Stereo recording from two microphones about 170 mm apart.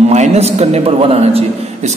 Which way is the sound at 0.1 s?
40° right (ahead or behind).